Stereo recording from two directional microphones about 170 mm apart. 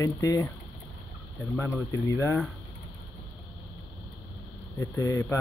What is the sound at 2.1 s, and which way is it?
Speech, 15° left (ahead or behind).